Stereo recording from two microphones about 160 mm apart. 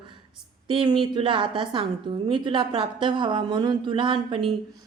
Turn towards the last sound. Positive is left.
turn(degrees=-30)  # may be behind; listen again after turning